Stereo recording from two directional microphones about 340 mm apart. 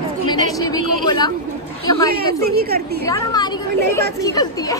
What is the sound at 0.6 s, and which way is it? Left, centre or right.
Speech, centre.